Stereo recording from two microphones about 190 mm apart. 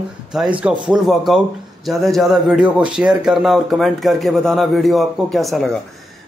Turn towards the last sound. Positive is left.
turn(degrees=0)  # may be behind; listen again after turning